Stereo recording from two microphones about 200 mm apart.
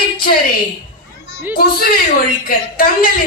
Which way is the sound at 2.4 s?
45° left (ahead or behind).